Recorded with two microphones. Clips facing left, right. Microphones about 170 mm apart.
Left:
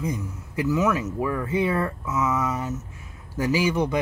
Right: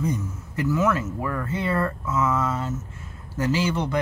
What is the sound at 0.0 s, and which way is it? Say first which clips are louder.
A man's voice: right 2 dB; 10° left (ahead or behind).